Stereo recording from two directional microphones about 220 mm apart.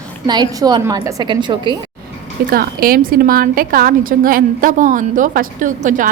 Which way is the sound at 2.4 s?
40° right (ahead or behind).